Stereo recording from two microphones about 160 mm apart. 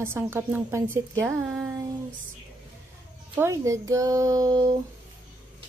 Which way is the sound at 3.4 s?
20° right (ahead or behind).